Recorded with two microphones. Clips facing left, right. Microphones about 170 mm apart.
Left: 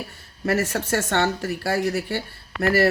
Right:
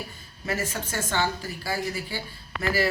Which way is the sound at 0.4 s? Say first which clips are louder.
Left 7 dB; 70° left (ahead or behind).